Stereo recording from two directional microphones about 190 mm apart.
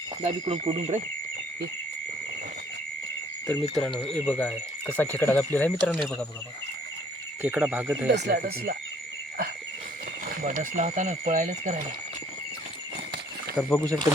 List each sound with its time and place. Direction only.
0.3 s speech: 30° right (ahead or behind)
3.4 s speech: 5° left (ahead or behind)
7.4 s speech: 10° right (ahead or behind)
8.1 s speech: 60° right (ahead or behind)
10.4 s speech: 40° right (ahead or behind)
13.6 s speech: 5° left (ahead or behind)